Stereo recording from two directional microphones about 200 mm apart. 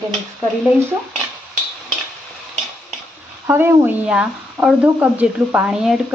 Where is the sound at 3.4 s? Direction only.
10° right (ahead or behind).